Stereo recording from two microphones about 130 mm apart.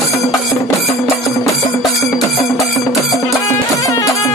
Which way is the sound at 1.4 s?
Centre (ahead or behind).